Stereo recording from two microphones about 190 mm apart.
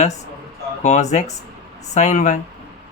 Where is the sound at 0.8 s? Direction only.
40° left (ahead or behind).